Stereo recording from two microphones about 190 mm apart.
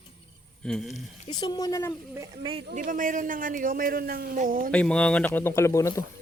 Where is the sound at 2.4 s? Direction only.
30° right (ahead or behind).